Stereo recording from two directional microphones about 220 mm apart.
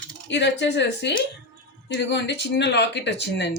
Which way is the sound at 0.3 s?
50° left (ahead or behind).